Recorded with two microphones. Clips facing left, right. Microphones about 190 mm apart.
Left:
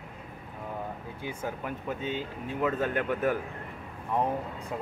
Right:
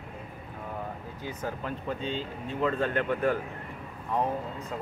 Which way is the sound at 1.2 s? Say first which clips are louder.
Even; 10° left (ahead or behind).